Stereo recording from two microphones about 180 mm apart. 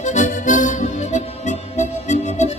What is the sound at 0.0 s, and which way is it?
Music, 40° left (ahead or behind).